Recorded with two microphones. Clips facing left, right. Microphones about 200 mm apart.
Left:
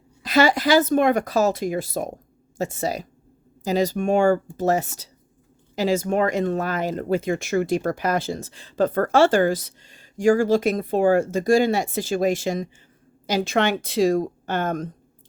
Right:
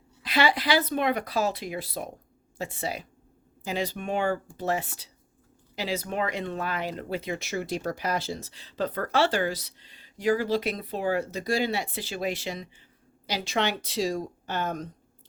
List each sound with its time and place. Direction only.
0.2 s speech: 45° left (ahead or behind)